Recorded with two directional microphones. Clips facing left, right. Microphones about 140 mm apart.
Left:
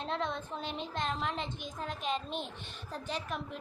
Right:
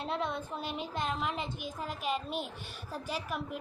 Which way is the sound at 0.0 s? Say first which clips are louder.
Right 1 dB; 5° right (ahead or behind).